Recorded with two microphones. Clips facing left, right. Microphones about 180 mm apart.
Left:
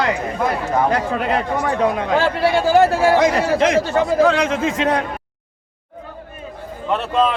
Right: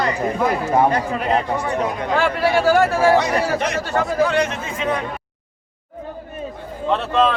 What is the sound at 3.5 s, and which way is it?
A man's voice, 90° left.